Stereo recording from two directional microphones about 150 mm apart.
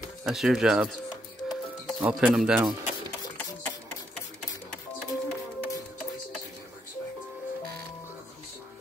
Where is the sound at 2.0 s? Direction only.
5° right (ahead or behind).